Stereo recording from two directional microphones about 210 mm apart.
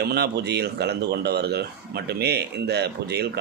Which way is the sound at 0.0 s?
50° right (ahead or behind).